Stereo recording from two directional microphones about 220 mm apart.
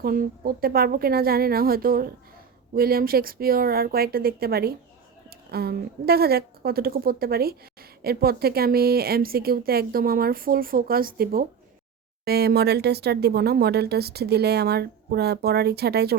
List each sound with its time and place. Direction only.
0.0 s speech: 40° right (ahead or behind)